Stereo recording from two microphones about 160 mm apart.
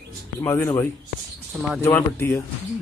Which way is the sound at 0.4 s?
15° left (ahead or behind).